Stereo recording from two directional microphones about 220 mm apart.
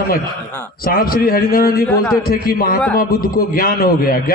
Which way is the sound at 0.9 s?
40° left (ahead or behind).